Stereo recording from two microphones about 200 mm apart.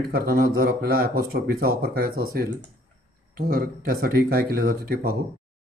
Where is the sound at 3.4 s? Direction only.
45° right (ahead or behind).